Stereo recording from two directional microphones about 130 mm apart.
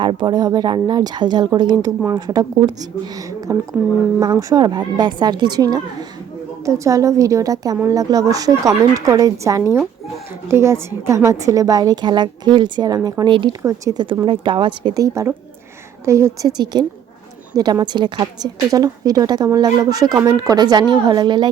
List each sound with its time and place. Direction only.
0.0 s a woman's voice: 40° right (ahead or behind)
15.0 s a woman's voice: 25° right (ahead or behind)